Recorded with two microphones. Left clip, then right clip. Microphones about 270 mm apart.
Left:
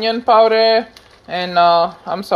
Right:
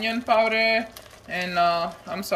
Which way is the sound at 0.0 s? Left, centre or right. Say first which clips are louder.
Left 10 dB; left.